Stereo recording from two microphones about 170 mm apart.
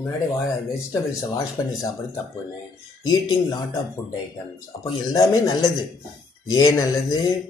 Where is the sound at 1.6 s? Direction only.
20° left (ahead or behind).